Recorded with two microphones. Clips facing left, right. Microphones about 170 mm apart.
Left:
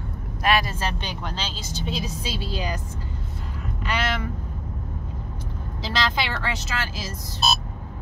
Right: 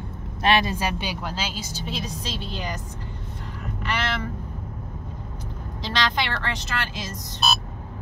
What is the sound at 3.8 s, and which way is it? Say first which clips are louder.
Vehicle: left 1 dB; 10° left (ahead or behind).